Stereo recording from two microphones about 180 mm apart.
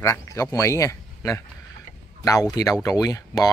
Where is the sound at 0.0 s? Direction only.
20° left (ahead or behind).